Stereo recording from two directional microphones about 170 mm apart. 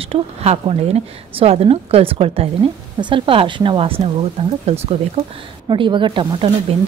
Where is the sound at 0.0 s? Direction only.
35° right (ahead or behind).